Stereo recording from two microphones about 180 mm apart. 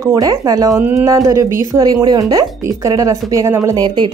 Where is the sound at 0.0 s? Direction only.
20° right (ahead or behind).